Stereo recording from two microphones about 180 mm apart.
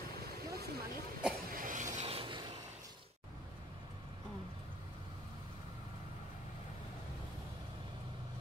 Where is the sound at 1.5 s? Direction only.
50° right (ahead or behind); by 2.4 s 30° right (ahead or behind).